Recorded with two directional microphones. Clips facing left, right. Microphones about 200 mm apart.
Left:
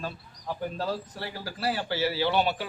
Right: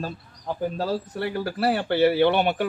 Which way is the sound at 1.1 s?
60° right (ahead or behind).